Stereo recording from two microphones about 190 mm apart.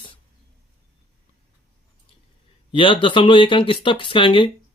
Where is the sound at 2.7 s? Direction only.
25° left (ahead or behind).